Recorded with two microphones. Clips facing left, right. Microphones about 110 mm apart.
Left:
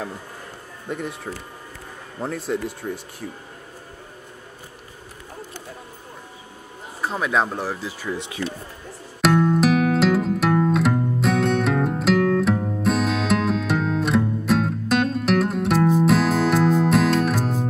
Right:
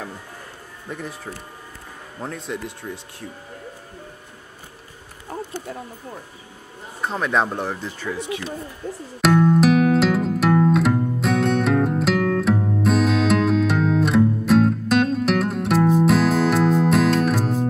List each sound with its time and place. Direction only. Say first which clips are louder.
0.8 s speech: left 3 dB; centre (ahead or behind)
2.8 s speech: left 4 dB; 25° left (ahead or behind)
7.0 s speech: right 1 dB; centre (ahead or behind)
9.2 s music: right 2 dB; centre (ahead or behind)